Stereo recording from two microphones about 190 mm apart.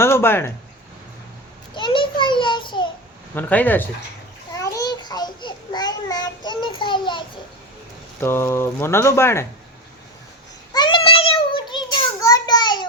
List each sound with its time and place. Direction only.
0.0 s speech: 10° left (ahead or behind)
1.7 s a sound: 25° left (ahead or behind)
3.3 s speech: 10° left (ahead or behind)
4.5 s babbling: 15° left (ahead or behind)
8.2 s speech: 10° left (ahead or behind)
10.8 s child singing: 25° left (ahead or behind)